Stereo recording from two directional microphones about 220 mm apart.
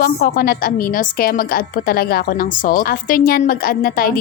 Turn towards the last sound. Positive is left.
turn(degrees=40)  # may be behind; listen again after turning